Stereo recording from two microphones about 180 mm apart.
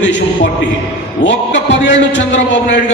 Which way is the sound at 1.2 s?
90° left.